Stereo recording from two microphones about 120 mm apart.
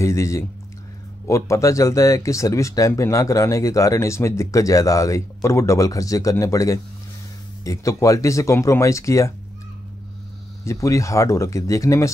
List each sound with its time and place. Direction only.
0.0 s speech: 25° left (ahead or behind)
10.6 s speech: 25° left (ahead or behind)